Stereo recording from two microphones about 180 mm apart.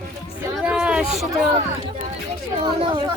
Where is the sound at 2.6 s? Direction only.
30° right (ahead or behind).